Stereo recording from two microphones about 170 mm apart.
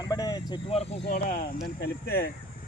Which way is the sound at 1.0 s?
65° left (ahead or behind).